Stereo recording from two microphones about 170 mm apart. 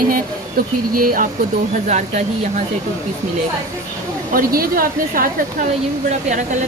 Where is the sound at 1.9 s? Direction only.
45° right (ahead or behind).